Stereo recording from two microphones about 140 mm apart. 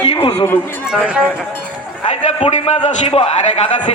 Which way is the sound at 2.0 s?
40° left (ahead or behind).